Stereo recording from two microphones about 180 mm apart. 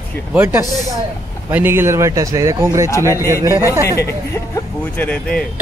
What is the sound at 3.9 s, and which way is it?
Speech, 15° left (ahead or behind).